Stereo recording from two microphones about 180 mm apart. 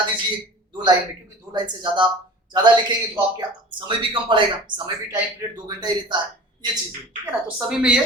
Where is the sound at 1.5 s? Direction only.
25° right (ahead or behind).